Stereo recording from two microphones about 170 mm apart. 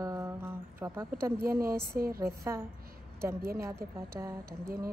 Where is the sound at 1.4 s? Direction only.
60° right (ahead or behind).